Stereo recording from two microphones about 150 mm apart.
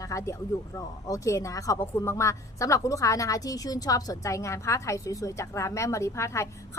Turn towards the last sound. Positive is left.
turn(degrees=20)  # may be behind; listen again after turning